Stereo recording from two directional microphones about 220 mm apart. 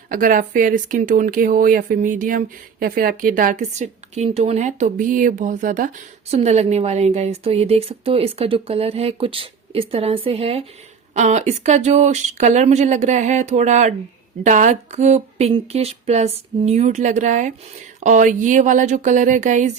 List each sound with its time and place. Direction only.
0.1 s a woman's voice: 40° right (ahead or behind)